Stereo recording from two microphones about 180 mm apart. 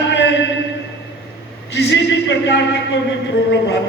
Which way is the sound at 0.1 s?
75° left (ahead or behind).